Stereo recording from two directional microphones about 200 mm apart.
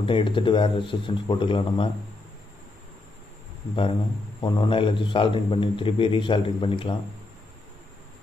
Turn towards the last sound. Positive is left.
turn(degrees=25)  # may be behind; listen again after turning